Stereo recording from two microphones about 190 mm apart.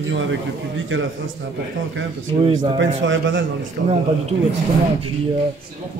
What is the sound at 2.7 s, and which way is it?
Speech, 90° right.